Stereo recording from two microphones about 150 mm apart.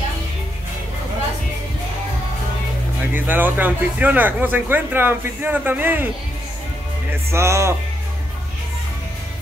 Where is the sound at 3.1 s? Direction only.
10° right (ahead or behind).